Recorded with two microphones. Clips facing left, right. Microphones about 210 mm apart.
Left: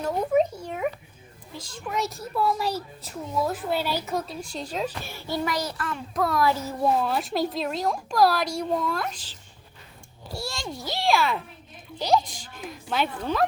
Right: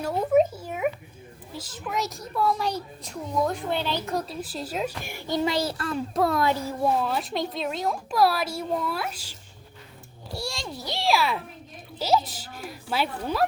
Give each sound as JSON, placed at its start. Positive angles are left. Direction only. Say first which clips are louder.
{"t": 0.0, "sound": "a sound", "louder": "right 1 dB", "side_deg": -5}
{"t": 1.5, "sound": "a child's voice", "louder": "even", "side_deg": -5}
{"t": 5.5, "sound": "a child's voice", "louder": "right 3 dB", "side_deg": -30}
{"t": 6.8, "sound": "a child's voice", "louder": "left 1 dB", "side_deg": 0}
{"t": 10.3, "sound": "a child's voice", "louder": "even", "side_deg": 0}